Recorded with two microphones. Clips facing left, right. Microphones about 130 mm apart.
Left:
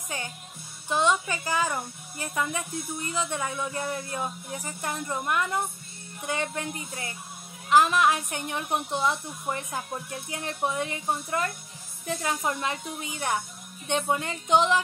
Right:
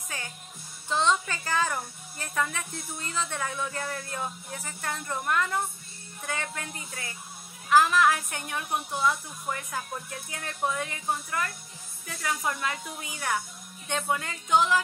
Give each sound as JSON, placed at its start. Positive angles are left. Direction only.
{"t": 0.8, "sound": "a woman's voice", "side_deg": 15}